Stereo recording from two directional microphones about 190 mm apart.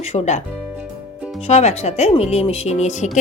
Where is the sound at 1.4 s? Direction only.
35° left (ahead or behind).